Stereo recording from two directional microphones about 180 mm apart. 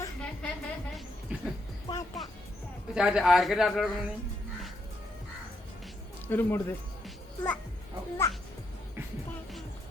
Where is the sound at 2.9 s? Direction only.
Centre (ahead or behind).